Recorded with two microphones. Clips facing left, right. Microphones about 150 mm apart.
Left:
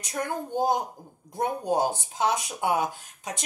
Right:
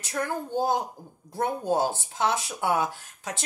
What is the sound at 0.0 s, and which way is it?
A woman's voice, 20° left (ahead or behind).